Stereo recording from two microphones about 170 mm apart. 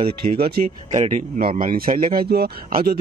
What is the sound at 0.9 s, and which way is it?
Speech, 40° right (ahead or behind).